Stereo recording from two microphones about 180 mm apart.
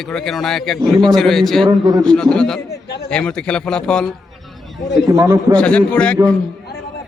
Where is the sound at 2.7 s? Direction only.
65° left (ahead or behind).